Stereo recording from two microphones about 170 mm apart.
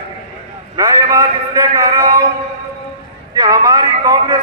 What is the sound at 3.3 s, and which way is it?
A man's voice, 25° right (ahead or behind).